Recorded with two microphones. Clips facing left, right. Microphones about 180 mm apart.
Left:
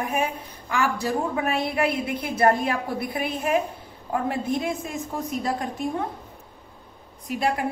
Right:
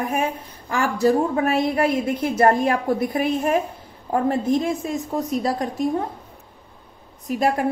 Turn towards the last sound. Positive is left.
turn(degrees=-40)  # may be behind; listen again after turning